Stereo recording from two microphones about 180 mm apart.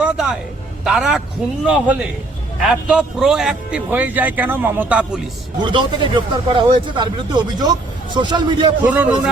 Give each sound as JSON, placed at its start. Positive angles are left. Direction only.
{"t": 0.0, "sound": "a sound", "side_deg": -5}
{"t": 0.9, "sound": "a man's voice", "side_deg": 0}
{"t": 5.6, "sound": "speech", "side_deg": -25}
{"t": 8.8, "sound": "a man's voice", "side_deg": -10}